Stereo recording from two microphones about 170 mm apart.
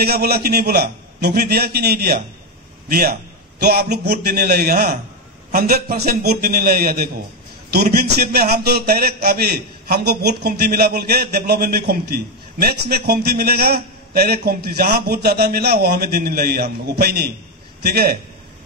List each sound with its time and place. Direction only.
0.0 s a man's voice: 65° right (ahead or behind)